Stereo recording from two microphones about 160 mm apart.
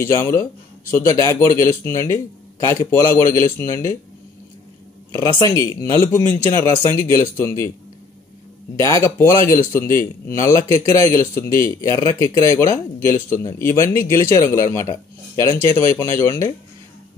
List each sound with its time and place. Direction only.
0.1 s speech: 15° left (ahead or behind)
5.1 s speech: 25° left (ahead or behind)
8.8 s speech: 20° left (ahead or behind)